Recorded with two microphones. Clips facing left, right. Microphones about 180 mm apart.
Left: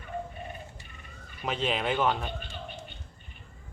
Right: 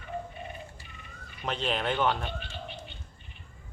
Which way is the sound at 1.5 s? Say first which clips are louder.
Left 1 dB; 5° left (ahead or behind).